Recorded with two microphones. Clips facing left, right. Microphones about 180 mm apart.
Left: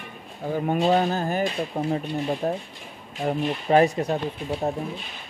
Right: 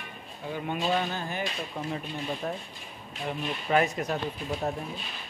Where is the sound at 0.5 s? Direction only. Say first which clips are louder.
Left 8 dB; 40° left (ahead or behind).